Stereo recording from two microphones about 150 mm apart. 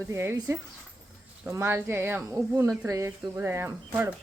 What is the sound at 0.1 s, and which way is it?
Speech, 15° right (ahead or behind).